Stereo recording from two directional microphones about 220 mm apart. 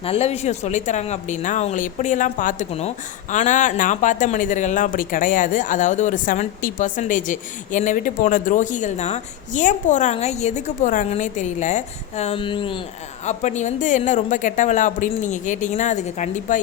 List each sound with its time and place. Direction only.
0.0 s speech: 30° left (ahead or behind)